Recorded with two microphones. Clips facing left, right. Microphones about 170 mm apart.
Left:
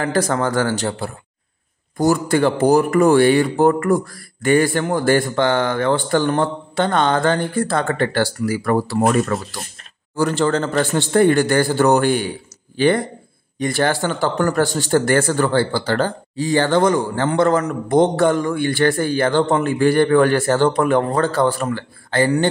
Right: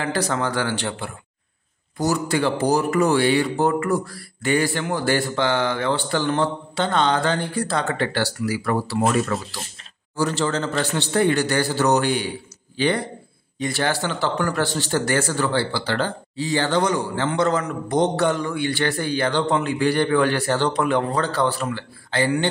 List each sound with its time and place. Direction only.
0.0 s speech: 45° left (ahead or behind)
2.0 s speech: 50° left (ahead or behind)